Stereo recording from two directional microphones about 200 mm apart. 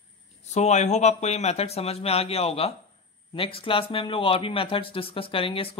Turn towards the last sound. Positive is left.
turn(degrees=25)  # may be behind; listen again after turning